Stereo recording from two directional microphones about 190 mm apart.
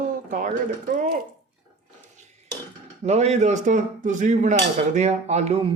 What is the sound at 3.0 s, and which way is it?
Speech, 35° right (ahead or behind).